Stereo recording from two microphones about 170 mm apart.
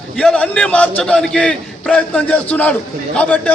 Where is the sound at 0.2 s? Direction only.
5° left (ahead or behind).